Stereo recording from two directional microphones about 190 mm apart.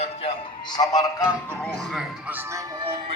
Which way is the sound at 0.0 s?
30° left (ahead or behind).